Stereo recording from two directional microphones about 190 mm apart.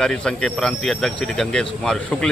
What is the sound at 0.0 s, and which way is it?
Speech, 5° left (ahead or behind).